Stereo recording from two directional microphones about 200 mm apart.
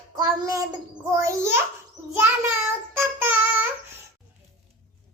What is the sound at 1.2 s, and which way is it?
Speech, 15° right (ahead or behind).